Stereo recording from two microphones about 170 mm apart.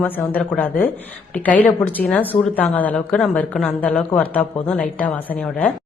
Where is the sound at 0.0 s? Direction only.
10° left (ahead or behind).